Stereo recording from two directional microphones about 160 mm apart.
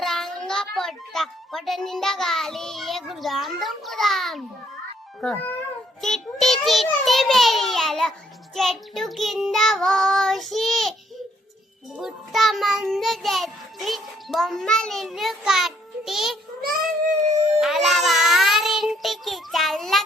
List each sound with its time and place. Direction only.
0.0 s a child's voice: centre (ahead or behind)
6.0 s child singing: centre (ahead or behind)
11.9 s child singing: centre (ahead or behind)
16.6 s cat: 60° right (ahead or behind)
17.5 s child singing: centre (ahead or behind)